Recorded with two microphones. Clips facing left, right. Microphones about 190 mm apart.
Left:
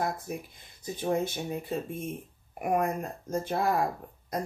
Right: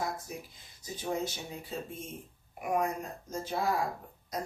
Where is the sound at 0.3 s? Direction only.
55° left (ahead or behind).